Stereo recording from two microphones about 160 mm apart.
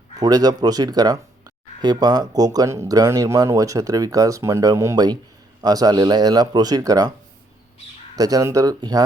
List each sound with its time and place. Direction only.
0.2 s speech: 25° right (ahead or behind)
8.1 s speech: 25° right (ahead or behind)